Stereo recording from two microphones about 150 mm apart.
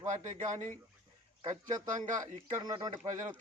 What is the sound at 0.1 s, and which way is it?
Speech, 55° right (ahead or behind).